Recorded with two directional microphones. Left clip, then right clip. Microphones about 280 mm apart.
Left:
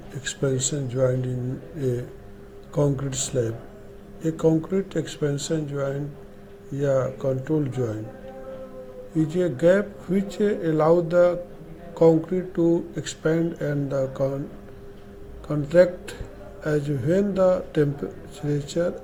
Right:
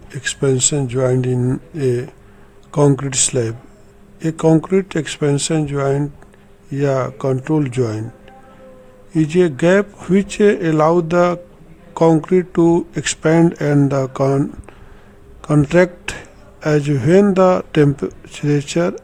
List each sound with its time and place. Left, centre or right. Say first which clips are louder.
0.1 s speech: right 8 dB; right
9.1 s speech: right 9 dB; right